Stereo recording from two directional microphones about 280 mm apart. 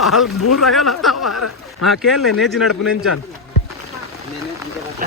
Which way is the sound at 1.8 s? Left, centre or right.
Centre.